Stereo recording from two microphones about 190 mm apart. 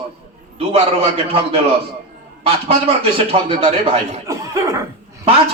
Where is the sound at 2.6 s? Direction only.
30° right (ahead or behind).